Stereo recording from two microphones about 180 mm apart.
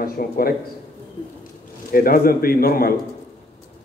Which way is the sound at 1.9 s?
55° left (ahead or behind).